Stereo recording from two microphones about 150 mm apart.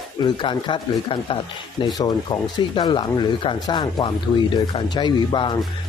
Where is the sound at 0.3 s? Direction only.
35° left (ahead or behind).